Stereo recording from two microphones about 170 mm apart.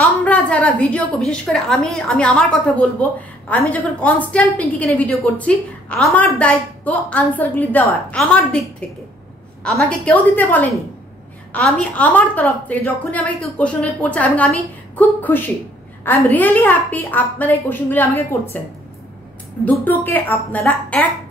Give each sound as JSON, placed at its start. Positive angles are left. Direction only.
{"t": 0.0, "sound": "a woman's voice", "side_deg": 10}
{"t": 9.6, "sound": "a woman's voice", "side_deg": 5}
{"t": 19.6, "sound": "a woman's voice", "side_deg": 10}